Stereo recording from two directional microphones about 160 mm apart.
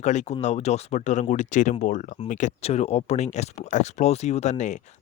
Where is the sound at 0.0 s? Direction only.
45° left (ahead or behind).